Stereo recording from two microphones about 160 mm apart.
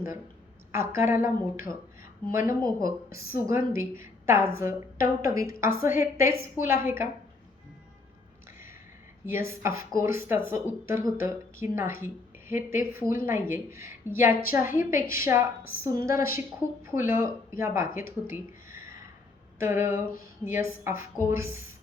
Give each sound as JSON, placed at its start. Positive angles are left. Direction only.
{"t": 0.7, "sound": "a woman's voice", "side_deg": -15}
{"t": 9.2, "sound": "speech", "side_deg": -15}